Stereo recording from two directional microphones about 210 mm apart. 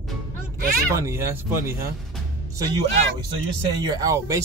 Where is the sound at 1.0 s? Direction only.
10° right (ahead or behind).